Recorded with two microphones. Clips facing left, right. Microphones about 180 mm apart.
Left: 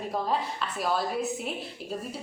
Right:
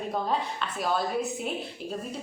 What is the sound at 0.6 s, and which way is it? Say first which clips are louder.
Speech: even; centre (ahead or behind).